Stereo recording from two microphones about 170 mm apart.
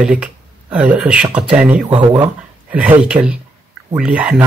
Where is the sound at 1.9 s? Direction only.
25° right (ahead or behind).